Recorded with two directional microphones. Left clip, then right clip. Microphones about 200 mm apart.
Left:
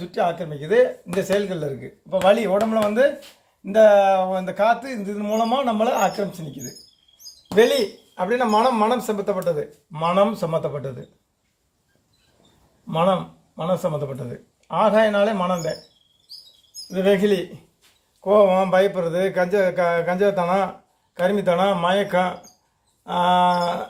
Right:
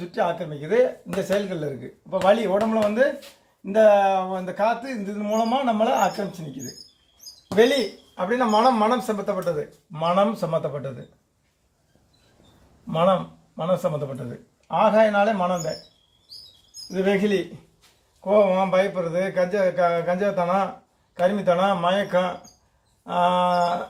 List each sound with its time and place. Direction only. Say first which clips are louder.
0.0 s speech: left 2 dB; 40° left (ahead or behind)
8.1 s speech: left 1 dB; 45° left (ahead or behind); by 10.9 s 25° left (ahead or behind)
12.9 s a man's voice: even; 30° left (ahead or behind)
14.7 s speech: left 1 dB; 40° left (ahead or behind)
16.9 s speech: left 3 dB; 45° left (ahead or behind)